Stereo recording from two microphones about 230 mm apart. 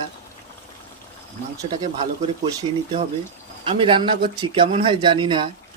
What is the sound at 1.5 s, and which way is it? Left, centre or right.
Speech, centre.